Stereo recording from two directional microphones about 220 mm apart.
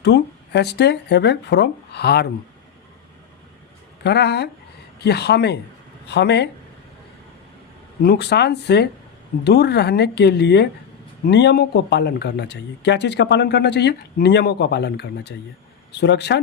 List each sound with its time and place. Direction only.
0.0 s speech: 50° left (ahead or behind)
4.0 s speech: 50° left (ahead or behind)
8.0 s speech: 45° left (ahead or behind)